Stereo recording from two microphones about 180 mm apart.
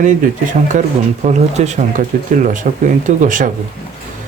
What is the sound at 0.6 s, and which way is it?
Speech, 45° right (ahead or behind).